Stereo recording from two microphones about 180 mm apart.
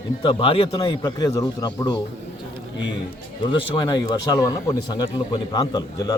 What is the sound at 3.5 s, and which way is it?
A man's voice, 25° left (ahead or behind).